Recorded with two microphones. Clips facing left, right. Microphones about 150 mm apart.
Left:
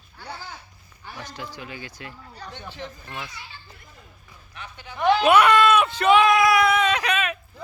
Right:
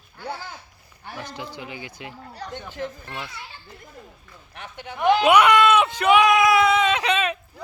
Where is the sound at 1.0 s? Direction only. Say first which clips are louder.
Right 3 dB; 55° right (ahead or behind).